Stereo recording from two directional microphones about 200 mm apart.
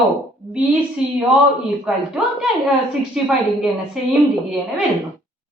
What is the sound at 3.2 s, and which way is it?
Speech, 5° right (ahead or behind).